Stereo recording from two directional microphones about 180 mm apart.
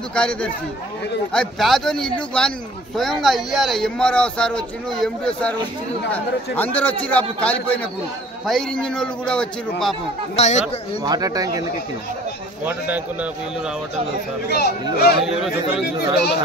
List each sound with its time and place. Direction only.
0.1 s a man's voice: 5° left (ahead or behind)
10.3 s speech: 35° left (ahead or behind)
11.1 s speech: 20° right (ahead or behind)
12.6 s a man's voice: 10° right (ahead or behind)
14.5 s speech: 60° left (ahead or behind)